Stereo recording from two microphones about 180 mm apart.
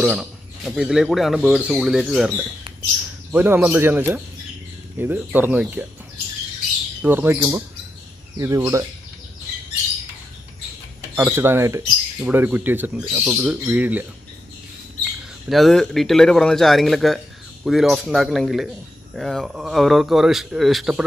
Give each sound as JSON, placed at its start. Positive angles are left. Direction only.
{"t": 0.0, "sound": "speech", "side_deg": -5}
{"t": 7.0, "sound": "speech", "side_deg": -10}
{"t": 11.1, "sound": "speech", "side_deg": -10}
{"t": 15.4, "sound": "speech", "side_deg": 0}